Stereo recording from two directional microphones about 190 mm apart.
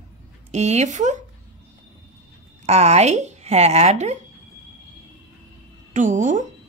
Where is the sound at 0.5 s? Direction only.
35° right (ahead or behind).